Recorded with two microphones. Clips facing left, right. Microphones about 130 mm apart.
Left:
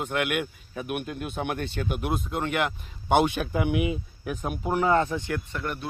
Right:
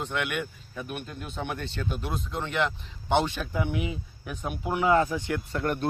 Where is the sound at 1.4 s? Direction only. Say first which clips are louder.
Left 3 dB; 55° left (ahead or behind).